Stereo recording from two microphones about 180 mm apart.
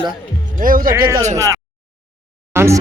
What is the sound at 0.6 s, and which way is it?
Speech, 50° right (ahead or behind).